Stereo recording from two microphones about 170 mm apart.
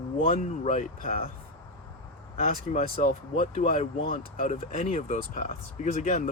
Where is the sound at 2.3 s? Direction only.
45° left (ahead or behind).